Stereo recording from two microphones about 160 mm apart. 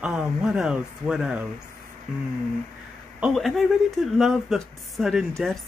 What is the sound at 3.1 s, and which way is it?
Speech, 5° right (ahead or behind).